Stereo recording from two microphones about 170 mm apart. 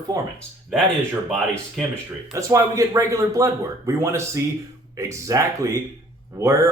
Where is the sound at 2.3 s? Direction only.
20° right (ahead or behind).